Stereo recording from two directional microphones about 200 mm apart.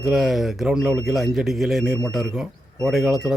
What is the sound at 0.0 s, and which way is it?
A man's voice, centre (ahead or behind).